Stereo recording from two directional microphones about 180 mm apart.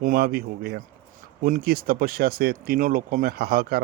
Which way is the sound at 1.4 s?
50° right (ahead or behind).